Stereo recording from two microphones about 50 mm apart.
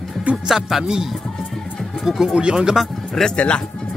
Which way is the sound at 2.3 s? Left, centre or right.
Centre.